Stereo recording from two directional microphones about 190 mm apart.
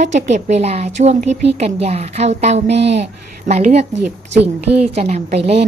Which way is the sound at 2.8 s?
65° right (ahead or behind).